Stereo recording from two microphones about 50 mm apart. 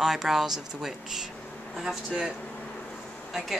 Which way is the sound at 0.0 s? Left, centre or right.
Centre.